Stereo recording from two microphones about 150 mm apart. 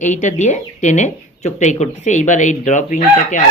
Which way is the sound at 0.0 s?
55° left (ahead or behind).